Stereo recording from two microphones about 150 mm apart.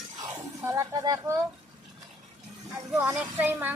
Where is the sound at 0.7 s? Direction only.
25° right (ahead or behind).